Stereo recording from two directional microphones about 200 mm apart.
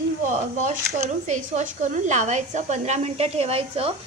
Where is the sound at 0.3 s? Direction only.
35° right (ahead or behind).